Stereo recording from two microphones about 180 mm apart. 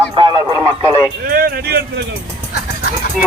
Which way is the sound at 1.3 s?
55° right (ahead or behind).